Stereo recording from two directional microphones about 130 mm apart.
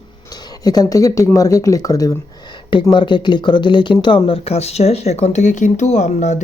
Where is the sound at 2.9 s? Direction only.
35° left (ahead or behind); by 6.4 s 65° left (ahead or behind).